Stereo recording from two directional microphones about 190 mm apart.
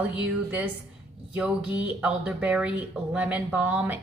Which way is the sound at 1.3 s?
5° right (ahead or behind).